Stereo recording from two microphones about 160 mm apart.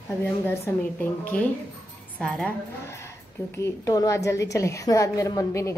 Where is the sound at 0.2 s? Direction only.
10° left (ahead or behind).